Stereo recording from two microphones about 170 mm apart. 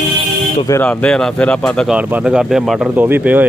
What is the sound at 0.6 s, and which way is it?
Speech, 15° left (ahead or behind).